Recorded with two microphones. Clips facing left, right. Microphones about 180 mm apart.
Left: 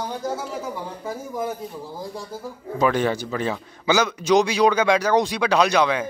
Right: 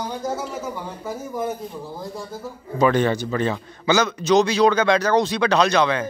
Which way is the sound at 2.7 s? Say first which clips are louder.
Right 2 dB; 5° left (ahead or behind).